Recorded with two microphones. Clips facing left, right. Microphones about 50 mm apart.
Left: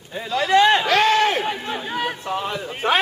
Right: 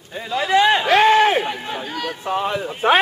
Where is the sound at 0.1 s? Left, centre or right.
Centre.